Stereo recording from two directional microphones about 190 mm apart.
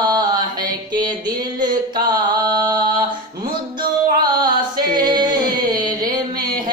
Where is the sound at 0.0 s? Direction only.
20° right (ahead or behind).